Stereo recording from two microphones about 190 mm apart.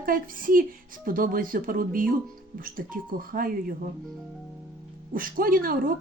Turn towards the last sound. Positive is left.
turn(degrees=-50)  # may be behind; listen again after turning